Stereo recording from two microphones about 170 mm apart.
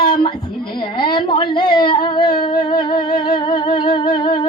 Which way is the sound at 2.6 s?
30° left (ahead or behind).